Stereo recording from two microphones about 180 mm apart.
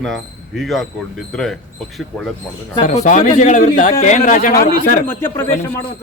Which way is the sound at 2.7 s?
45° left (ahead or behind).